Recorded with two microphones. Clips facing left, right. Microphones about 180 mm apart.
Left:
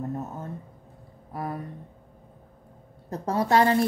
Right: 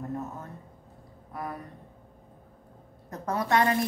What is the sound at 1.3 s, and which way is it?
Speech, 30° left (ahead or behind).